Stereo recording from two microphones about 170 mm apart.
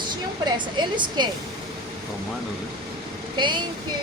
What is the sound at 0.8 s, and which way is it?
Speech, 25° right (ahead or behind).